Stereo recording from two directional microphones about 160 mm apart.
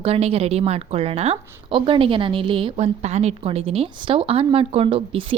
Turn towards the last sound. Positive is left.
turn(degrees=-35)  # may be behind; listen again after turning